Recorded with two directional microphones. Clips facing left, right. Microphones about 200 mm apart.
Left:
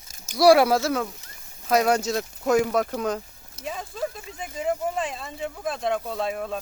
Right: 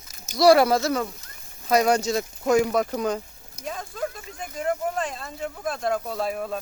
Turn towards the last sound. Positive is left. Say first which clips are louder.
# even
turn(degrees=0)  # may be behind; listen again after turning